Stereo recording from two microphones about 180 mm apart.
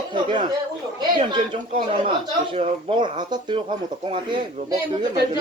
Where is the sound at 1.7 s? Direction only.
30° right (ahead or behind).